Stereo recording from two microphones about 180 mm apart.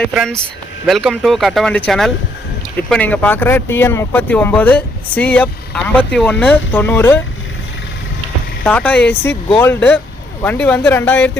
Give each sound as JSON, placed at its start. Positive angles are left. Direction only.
{"t": 0.1, "sound": "speech", "side_deg": -5}
{"t": 8.6, "sound": "speech", "side_deg": 10}